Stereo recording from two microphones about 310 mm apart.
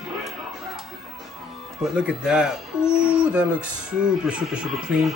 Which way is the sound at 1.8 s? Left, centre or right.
Centre.